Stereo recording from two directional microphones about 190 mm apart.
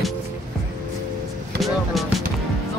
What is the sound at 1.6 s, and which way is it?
Speech, centre (ahead or behind).